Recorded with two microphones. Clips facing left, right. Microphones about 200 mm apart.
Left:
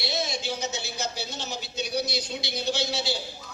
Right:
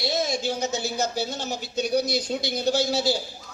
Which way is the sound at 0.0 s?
45° right (ahead or behind).